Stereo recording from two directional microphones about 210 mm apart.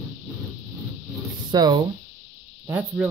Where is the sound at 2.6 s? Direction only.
10° right (ahead or behind).